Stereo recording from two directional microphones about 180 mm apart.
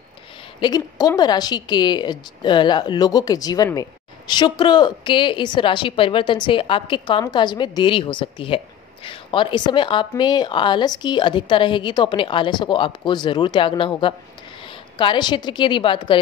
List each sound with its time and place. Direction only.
0.6 s a woman's voice: 20° left (ahead or behind)